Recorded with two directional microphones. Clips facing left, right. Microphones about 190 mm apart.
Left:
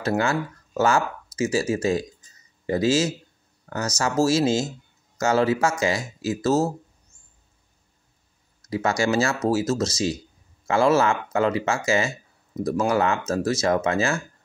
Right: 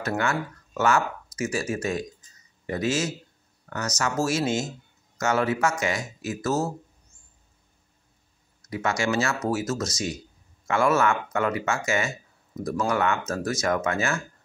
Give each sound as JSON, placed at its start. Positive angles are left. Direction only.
{"t": 0.0, "sound": "speech", "side_deg": 30}
{"t": 8.6, "sound": "speech", "side_deg": 35}